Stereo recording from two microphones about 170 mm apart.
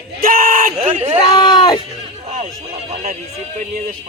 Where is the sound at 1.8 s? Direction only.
40° right (ahead or behind).